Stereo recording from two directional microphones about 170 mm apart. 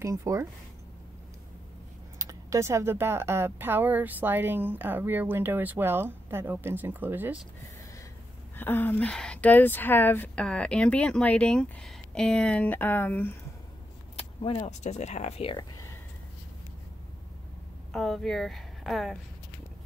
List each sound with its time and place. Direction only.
0.0 s speech: 20° right (ahead or behind)
2.1 s speech: 20° right (ahead or behind)
8.5 s speech: 10° left (ahead or behind)
14.1 s speech: 35° left (ahead or behind)
17.9 s speech: centre (ahead or behind)